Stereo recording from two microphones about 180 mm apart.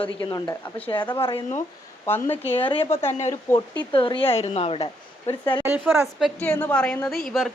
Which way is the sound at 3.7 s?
30° left (ahead or behind).